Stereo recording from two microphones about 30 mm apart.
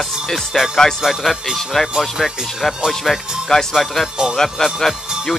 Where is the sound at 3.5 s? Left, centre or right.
Centre.